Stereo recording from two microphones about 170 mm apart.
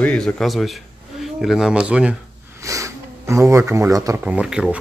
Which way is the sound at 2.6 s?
20° right (ahead or behind).